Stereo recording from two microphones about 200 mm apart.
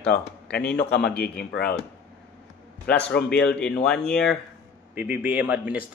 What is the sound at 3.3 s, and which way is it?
Speech, 5° left (ahead or behind).